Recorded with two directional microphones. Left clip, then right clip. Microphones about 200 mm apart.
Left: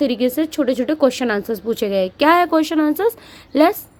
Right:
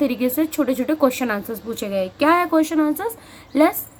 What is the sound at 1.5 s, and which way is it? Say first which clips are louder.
Speech: left 7 dB; 45° left (ahead or behind).